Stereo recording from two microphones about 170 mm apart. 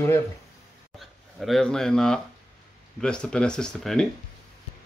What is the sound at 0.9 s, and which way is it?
Speech, centre (ahead or behind).